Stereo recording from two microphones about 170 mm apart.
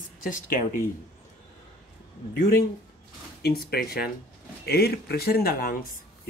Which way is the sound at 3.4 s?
65° left (ahead or behind).